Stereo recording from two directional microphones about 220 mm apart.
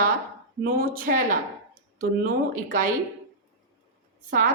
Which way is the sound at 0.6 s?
40° right (ahead or behind).